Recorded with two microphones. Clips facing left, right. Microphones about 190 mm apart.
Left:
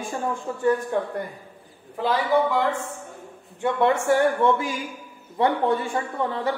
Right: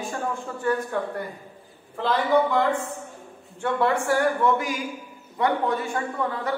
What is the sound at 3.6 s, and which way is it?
Speech, 20° left (ahead or behind).